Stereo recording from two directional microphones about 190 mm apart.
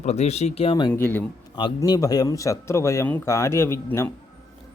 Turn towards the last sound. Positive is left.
turn(degrees=15)  # may be behind; listen again after turning